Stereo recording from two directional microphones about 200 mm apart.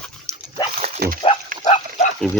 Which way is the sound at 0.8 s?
30° right (ahead or behind).